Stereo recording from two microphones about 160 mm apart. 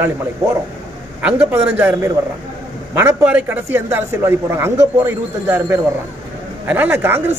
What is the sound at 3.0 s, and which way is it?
A man's voice, 10° right (ahead or behind).